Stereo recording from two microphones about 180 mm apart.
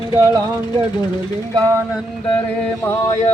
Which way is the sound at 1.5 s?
15° right (ahead or behind).